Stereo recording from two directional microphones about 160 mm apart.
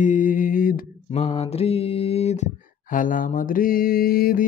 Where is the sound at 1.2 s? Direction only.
40° left (ahead or behind).